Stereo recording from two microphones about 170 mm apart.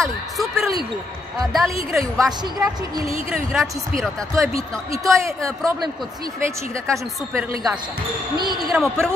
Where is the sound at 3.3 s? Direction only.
Centre (ahead or behind).